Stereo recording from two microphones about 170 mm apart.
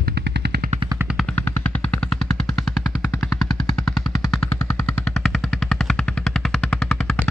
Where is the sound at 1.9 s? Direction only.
Centre (ahead or behind).